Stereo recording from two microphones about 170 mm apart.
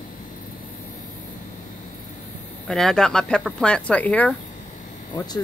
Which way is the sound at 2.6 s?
Centre (ahead or behind).